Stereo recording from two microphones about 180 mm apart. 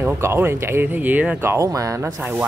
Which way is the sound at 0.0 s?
10° right (ahead or behind).